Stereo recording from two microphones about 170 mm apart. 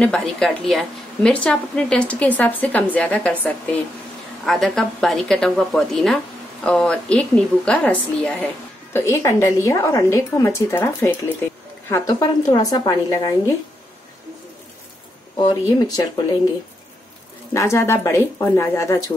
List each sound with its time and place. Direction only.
0.0 s a woman's voice: 5° left (ahead or behind)
8.9 s a woman's voice: 15° left (ahead or behind)
11.9 s a woman's voice: 20° left (ahead or behind)
15.3 s a woman's voice: 25° left (ahead or behind)
17.6 s a woman's voice: 15° left (ahead or behind)